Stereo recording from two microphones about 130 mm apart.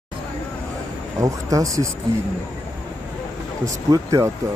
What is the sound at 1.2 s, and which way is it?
Speech, 25° right (ahead or behind).